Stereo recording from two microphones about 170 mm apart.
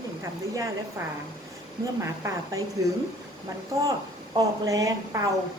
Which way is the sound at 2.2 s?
20° right (ahead or behind).